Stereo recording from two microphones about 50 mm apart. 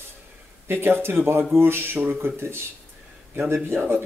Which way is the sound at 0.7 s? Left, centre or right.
Right.